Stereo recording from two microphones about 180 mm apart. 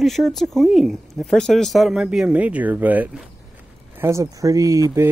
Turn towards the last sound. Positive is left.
turn(degrees=-15)  # may be behind; listen again after turning